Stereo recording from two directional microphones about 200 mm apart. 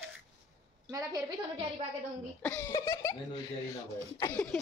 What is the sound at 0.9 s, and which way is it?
Speech, 15° right (ahead or behind).